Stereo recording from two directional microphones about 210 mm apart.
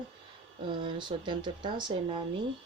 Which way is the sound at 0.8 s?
20° right (ahead or behind).